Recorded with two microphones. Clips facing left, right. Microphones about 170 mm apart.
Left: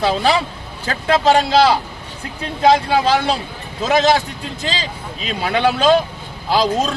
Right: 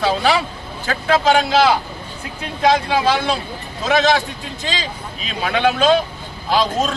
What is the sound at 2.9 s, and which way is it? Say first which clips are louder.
Speech: left 2 dB; 40° left (ahead or behind).